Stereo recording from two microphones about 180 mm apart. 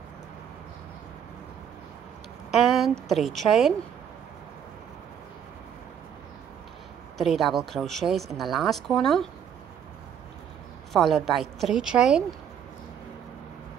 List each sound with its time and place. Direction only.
2.5 s speech: centre (ahead or behind)
7.2 s speech: centre (ahead or behind)
10.9 s speech: centre (ahead or behind)